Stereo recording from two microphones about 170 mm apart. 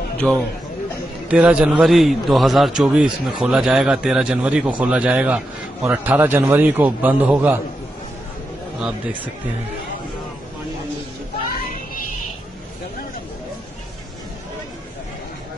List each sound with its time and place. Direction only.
0.2 s a man's voice: 5° left (ahead or behind)
1.3 s a man's voice: 5° right (ahead or behind)